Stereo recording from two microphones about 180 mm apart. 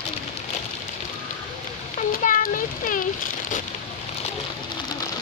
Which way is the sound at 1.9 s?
45° left (ahead or behind).